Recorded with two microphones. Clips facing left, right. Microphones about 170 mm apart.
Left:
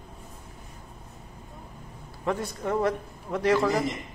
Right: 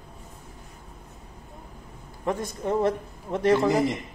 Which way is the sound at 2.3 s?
20° right (ahead or behind).